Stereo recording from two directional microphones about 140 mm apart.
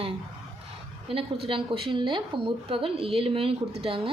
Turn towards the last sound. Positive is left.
turn(degrees=-40)  # may be behind; listen again after turning